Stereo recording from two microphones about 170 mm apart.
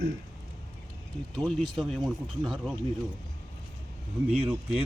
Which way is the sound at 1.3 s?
Centre (ahead or behind).